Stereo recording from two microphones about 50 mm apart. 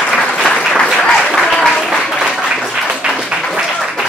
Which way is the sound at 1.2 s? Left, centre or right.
Centre.